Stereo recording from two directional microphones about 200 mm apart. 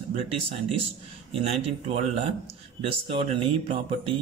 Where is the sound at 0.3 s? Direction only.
30° right (ahead or behind).